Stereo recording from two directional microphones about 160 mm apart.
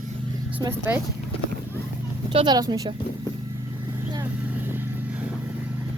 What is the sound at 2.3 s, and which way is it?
Speech, 30° right (ahead or behind).